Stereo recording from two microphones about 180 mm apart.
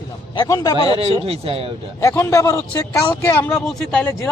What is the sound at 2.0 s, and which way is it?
Speech, 15° left (ahead or behind).